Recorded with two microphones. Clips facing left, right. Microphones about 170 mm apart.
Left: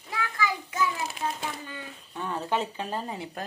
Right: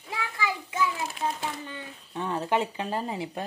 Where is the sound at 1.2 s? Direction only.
15° right (ahead or behind).